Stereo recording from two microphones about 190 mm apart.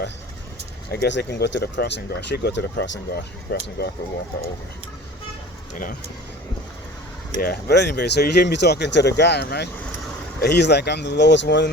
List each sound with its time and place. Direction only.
0.9 s speech: 60° left (ahead or behind)
3.5 s speech: 60° left (ahead or behind)
7.3 s speech: 55° left (ahead or behind)